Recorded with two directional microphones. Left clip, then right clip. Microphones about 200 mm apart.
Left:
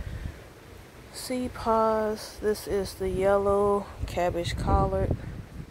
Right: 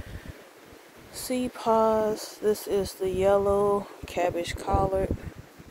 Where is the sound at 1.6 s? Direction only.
15° right (ahead or behind).